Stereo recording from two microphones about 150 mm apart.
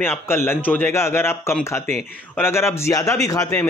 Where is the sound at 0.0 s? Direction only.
15° left (ahead or behind).